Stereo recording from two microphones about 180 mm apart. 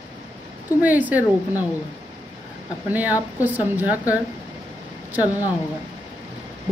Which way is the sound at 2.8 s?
10° right (ahead or behind).